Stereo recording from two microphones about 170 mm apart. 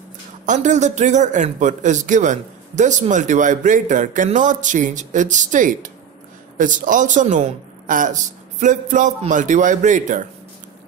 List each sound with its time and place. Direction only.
0.5 s a man's voice: 45° right (ahead or behind)